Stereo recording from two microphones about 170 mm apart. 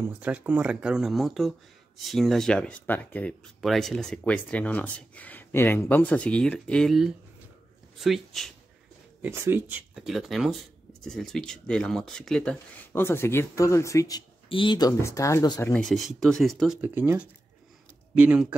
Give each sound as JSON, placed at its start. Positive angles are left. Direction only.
{"t": 0.0, "sound": "speech", "side_deg": -10}
{"t": 9.2, "sound": "speech", "side_deg": -15}
{"t": 15.6, "sound": "speech", "side_deg": 5}